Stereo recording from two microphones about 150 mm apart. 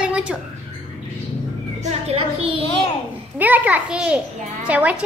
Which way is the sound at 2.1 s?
40° right (ahead or behind).